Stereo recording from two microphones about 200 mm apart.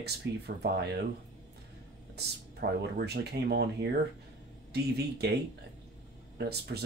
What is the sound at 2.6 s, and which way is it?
Speech, 50° right (ahead or behind).